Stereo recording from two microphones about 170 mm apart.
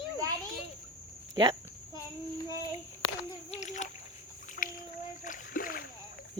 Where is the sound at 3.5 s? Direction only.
45° left (ahead or behind).